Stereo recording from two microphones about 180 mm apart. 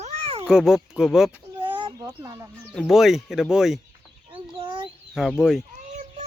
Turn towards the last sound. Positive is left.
turn(degrees=0)  # may be behind; listen again after turning